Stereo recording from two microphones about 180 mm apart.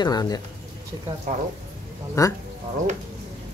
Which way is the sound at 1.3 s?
45° right (ahead or behind).